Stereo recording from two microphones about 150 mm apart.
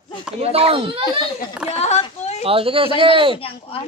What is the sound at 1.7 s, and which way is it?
Speech, 45° left (ahead or behind).